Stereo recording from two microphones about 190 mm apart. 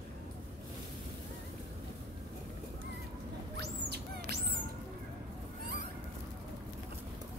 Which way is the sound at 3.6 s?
60° right (ahead or behind).